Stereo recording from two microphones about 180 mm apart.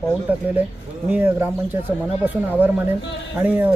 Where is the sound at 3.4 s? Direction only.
10° right (ahead or behind).